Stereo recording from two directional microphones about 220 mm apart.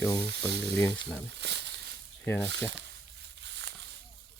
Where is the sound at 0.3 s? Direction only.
50° right (ahead or behind).